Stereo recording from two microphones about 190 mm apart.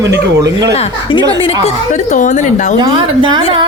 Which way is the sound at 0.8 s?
30° left (ahead or behind).